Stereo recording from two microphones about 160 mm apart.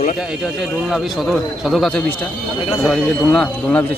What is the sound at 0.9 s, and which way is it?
Speech, centre (ahead or behind).